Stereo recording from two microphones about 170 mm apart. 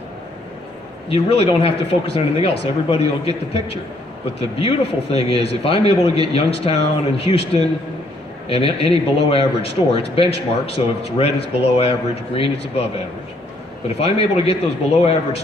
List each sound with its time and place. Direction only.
1.0 s speech: 35° left (ahead or behind)
13.8 s speech: 35° left (ahead or behind)